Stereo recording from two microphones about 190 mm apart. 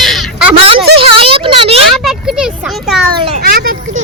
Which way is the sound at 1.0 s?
30° right (ahead or behind).